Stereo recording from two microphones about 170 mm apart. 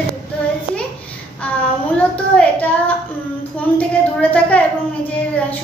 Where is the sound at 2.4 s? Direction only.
10° left (ahead or behind).